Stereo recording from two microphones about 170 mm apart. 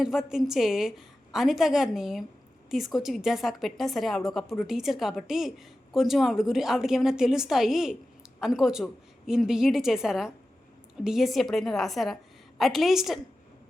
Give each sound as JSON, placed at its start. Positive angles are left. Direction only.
{"t": 0.0, "sound": "a woman's voice", "side_deg": -5}